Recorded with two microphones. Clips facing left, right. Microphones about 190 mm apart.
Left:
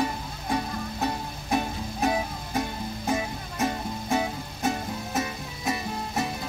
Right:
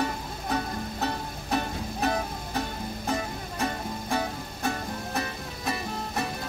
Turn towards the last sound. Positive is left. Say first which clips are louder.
# left 2 dB
turn(degrees=20)  # may be behind; listen again after turning